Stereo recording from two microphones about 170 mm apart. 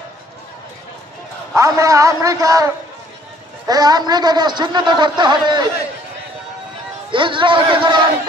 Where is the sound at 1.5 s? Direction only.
20° right (ahead or behind).